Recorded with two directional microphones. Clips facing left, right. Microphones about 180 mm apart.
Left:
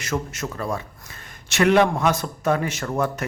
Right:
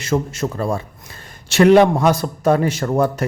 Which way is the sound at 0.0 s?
30° right (ahead or behind).